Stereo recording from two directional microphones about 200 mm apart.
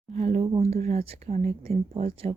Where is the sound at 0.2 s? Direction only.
35° right (ahead or behind).